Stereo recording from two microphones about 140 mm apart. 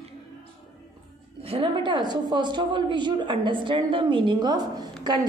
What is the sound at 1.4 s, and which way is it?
A woman's voice, 40° right (ahead or behind).